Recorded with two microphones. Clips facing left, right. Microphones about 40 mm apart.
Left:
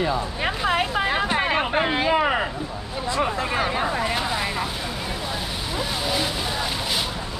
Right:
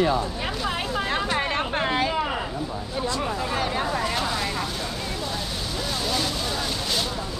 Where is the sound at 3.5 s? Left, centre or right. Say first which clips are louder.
Left 2 dB; centre.